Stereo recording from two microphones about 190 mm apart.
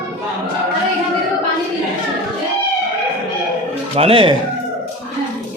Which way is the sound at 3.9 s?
30° right (ahead or behind).